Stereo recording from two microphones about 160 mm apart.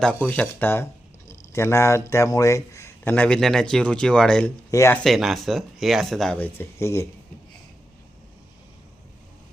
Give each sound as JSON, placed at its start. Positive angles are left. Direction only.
{"t": 0.4, "sound": "speech", "side_deg": 15}
{"t": 4.7, "sound": "speech", "side_deg": 20}
{"t": 5.0, "sound": "speech", "side_deg": 0}